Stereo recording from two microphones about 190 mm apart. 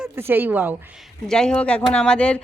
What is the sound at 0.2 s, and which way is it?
Speech, 10° right (ahead or behind).